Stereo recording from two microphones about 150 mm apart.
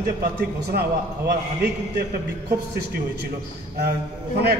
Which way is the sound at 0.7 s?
90° right.